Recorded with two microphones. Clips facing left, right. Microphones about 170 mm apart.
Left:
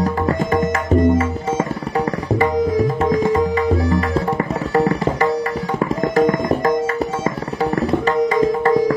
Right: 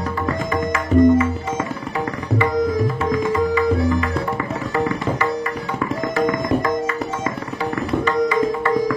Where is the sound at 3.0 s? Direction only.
40° left (ahead or behind).